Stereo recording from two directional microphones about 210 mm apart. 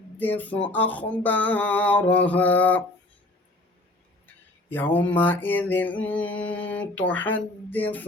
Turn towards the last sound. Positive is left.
turn(degrees=10)  # may be behind; listen again after turning